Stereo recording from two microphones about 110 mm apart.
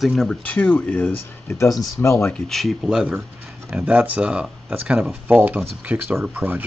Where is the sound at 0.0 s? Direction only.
Centre (ahead or behind).